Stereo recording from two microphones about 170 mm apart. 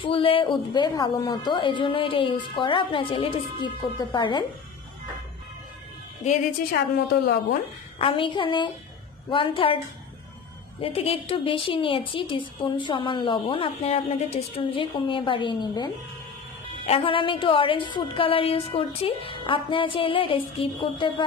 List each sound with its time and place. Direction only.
0.0 s a woman's voice: 30° left (ahead or behind)
8.0 s a woman's voice: 30° left (ahead or behind)
10.8 s a woman's voice: 35° left (ahead or behind)